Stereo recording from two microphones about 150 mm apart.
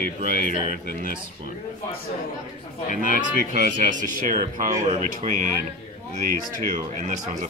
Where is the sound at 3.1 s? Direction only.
60° right (ahead or behind).